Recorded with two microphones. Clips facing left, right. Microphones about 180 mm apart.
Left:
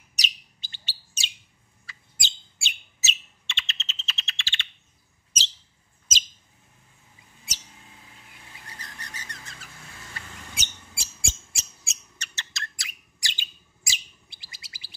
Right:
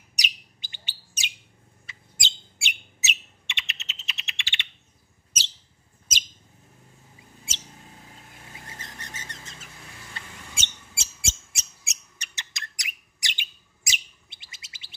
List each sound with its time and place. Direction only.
0.1 s bird: 15° right (ahead or behind)
7.5 s bird: 25° right (ahead or behind)
8.6 s a sound: 25° right (ahead or behind)
10.1 s mouse: 25° right (ahead or behind)